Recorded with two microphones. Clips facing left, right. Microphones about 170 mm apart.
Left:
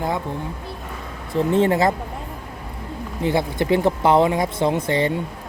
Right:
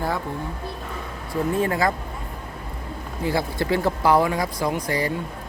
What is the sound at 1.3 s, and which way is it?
Speech, 25° left (ahead or behind).